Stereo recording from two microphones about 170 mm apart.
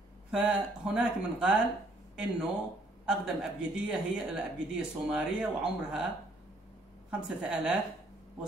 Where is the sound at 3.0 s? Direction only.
5° right (ahead or behind).